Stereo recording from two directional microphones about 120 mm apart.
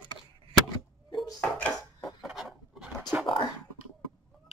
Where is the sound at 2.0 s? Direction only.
Centre (ahead or behind).